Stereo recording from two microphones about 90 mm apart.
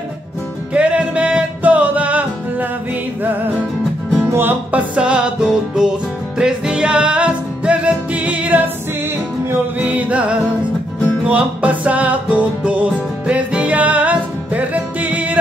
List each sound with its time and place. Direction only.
0.7 s music: 15° right (ahead or behind)
4.3 s music: 25° right (ahead or behind)